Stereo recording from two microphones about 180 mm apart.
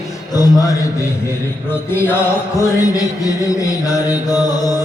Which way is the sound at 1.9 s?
15° left (ahead or behind).